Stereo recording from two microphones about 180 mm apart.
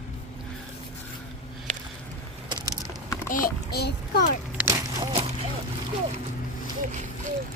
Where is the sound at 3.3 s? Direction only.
50° left (ahead or behind).